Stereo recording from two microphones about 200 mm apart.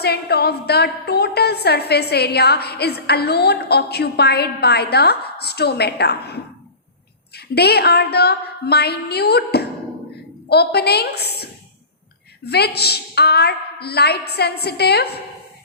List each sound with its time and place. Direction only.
0.0 s a woman's voice: 55° left (ahead or behind)